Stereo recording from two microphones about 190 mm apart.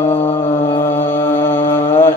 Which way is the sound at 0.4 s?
35° left (ahead or behind).